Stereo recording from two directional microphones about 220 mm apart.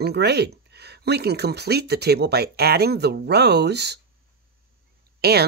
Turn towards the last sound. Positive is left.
turn(degrees=-45)  # may be behind; listen again after turning